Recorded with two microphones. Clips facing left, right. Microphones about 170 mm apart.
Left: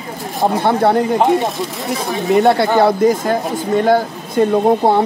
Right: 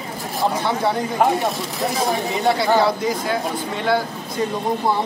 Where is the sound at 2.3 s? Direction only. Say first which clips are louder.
Left 9 dB; 60° left (ahead or behind); by 4.4 s 45° left (ahead or behind).